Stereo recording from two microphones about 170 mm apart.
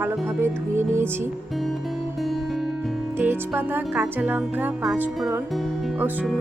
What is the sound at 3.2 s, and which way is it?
Music, 10° right (ahead or behind).